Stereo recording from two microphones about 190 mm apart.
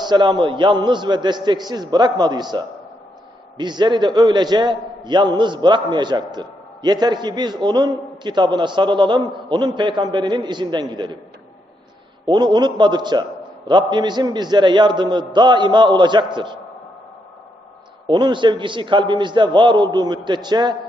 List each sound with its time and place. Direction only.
0.0 s a man's voice: 25° right (ahead or behind)
12.2 s a man's voice: 25° right (ahead or behind)
18.1 s a man's voice: 25° right (ahead or behind)